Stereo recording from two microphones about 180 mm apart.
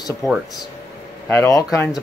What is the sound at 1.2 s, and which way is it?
Speech, 15° left (ahead or behind).